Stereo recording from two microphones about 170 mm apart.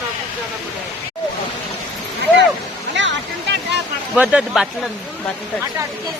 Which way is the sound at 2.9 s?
90° right.